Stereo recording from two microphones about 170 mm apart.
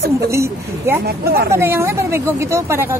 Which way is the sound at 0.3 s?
15° right (ahead or behind).